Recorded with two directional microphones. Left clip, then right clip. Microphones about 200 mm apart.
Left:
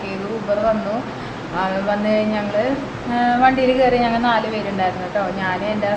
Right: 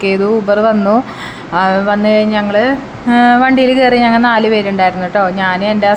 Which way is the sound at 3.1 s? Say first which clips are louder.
Right 7 dB; 40° right (ahead or behind).